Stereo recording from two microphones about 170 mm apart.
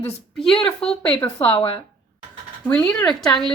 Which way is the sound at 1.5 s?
30° left (ahead or behind).